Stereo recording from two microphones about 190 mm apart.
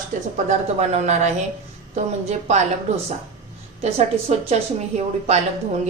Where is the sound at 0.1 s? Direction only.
45° right (ahead or behind).